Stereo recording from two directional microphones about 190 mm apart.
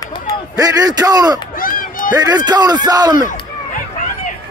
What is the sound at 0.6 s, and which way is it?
Speech, 20° right (ahead or behind).